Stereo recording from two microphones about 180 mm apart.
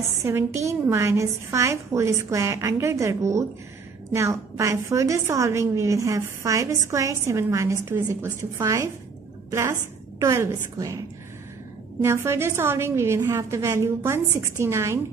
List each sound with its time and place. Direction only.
0.2 s a woman's voice: 15° right (ahead or behind)
12.0 s a woman's voice: 15° right (ahead or behind)